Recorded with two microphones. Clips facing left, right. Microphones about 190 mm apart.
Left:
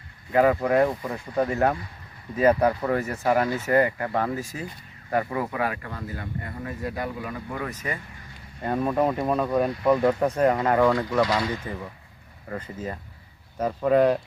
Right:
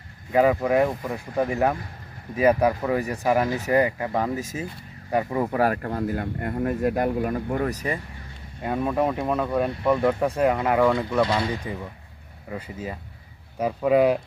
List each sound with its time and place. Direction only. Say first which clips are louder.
0.3 s speech: even; 10° right (ahead or behind)
5.5 s speech: right 6 dB; 40° right (ahead or behind)
5.7 s speech: right 9 dB; 50° right (ahead or behind)
7.5 s speech: right 6 dB; 40° right (ahead or behind)
8.6 s speech: even; centre (ahead or behind)
10.2 s speech: even; 10° right (ahead or behind)
11.2 s speech: right 1 dB; 25° right (ahead or behind)
11.6 s speech: right 1 dB; 15° right (ahead or behind)